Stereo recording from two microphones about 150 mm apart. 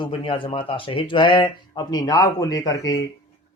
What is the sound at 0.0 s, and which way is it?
A man's voice, 35° left (ahead or behind).